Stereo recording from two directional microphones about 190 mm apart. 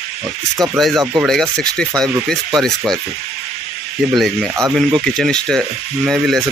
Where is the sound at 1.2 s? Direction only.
Centre (ahead or behind).